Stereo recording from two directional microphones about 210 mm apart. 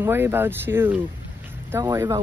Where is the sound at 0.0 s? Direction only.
10° right (ahead or behind).